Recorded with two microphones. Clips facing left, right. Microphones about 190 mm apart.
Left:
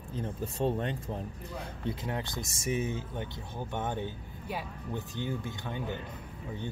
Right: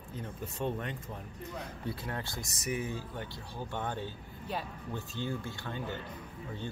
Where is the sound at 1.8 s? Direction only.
20° left (ahead or behind).